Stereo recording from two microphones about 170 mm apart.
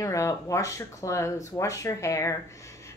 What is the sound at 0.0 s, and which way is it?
A woman's voice, 20° left (ahead or behind).